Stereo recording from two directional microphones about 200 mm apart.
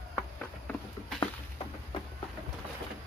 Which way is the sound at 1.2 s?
25° left (ahead or behind).